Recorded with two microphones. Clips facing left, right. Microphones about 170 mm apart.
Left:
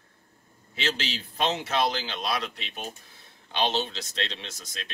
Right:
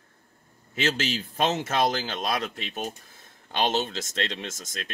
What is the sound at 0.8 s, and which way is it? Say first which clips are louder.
A man's voice: right 4 dB; 45° right (ahead or behind).